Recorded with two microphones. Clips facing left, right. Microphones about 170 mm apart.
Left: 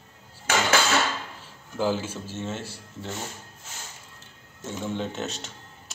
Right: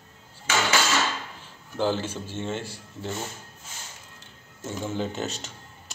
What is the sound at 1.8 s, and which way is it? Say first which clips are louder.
Speech: even; 5° left (ahead or behind).